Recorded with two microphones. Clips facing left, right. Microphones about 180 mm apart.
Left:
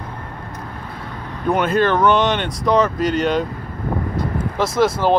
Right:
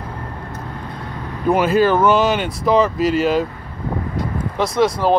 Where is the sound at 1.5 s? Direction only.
5° right (ahead or behind).